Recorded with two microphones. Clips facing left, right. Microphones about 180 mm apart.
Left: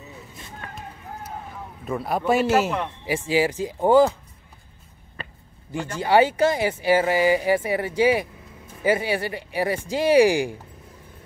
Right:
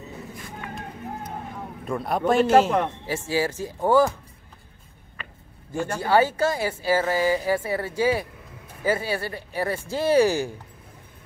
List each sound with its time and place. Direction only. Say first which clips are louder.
1.9 s speech: even; centre (ahead or behind); by 4.1 s 15° left (ahead or behind)
5.2 s a sound: left 4 dB; 35° left (ahead or behind)
5.7 s speech: left 1 dB; 20° left (ahead or behind)